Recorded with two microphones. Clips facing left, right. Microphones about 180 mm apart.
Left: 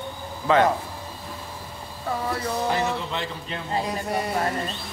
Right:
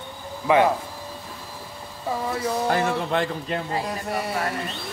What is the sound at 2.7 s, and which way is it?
Speech, 50° right (ahead or behind).